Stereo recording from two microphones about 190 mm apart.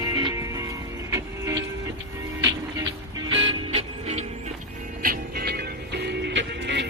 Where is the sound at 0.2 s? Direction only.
20° right (ahead or behind).